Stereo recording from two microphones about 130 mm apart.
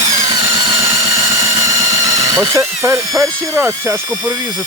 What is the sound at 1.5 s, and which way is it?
Drill, 30° right (ahead or behind).